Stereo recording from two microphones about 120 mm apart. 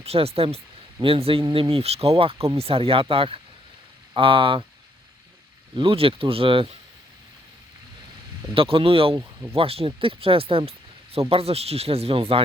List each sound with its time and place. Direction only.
0.0 s speech: 55° right (ahead or behind)
5.7 s speech: 50° right (ahead or behind)
8.5 s speech: 50° right (ahead or behind)